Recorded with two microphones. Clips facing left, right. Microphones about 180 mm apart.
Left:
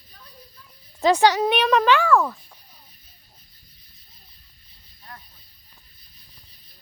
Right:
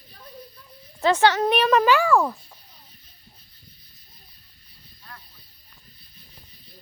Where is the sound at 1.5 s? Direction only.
Centre (ahead or behind).